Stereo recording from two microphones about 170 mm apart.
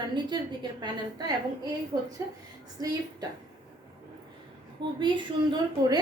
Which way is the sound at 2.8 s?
20° right (ahead or behind).